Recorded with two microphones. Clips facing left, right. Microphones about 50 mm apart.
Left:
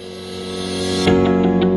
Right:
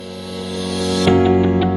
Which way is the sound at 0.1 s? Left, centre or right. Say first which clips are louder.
Right 1 dB; centre.